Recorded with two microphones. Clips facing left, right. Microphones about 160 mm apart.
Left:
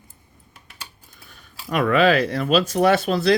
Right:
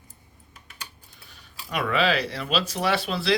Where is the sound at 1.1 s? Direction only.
50° left (ahead or behind).